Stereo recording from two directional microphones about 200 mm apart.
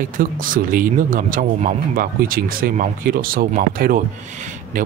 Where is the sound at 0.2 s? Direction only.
45° right (ahead or behind).